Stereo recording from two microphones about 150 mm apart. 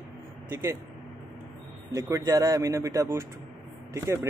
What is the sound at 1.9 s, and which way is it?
Speech, 20° right (ahead or behind).